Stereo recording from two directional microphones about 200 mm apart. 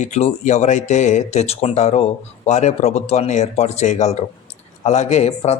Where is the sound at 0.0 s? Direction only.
35° left (ahead or behind).